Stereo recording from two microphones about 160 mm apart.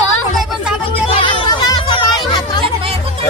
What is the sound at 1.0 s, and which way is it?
Chatter, 30° left (ahead or behind).